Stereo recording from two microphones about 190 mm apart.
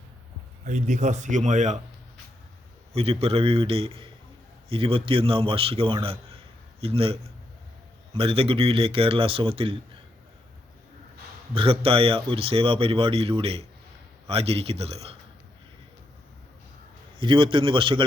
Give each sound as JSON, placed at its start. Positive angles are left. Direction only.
{"t": 0.6, "sound": "a man's voice", "side_deg": -40}
{"t": 2.9, "sound": "a man's voice", "side_deg": -30}
{"t": 11.5, "sound": "a man's voice", "side_deg": -30}
{"t": 17.2, "sound": "speech", "side_deg": -25}